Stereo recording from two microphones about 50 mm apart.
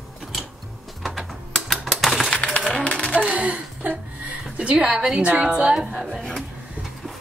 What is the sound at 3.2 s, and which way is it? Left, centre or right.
A woman's voice, right.